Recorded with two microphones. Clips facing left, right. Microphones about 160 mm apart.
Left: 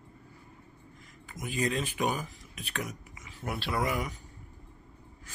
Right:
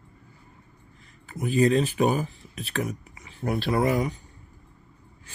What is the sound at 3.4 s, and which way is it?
Speech, 45° right (ahead or behind).